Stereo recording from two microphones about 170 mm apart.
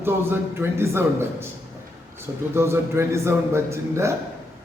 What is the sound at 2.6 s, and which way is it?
A man's voice, 15° right (ahead or behind).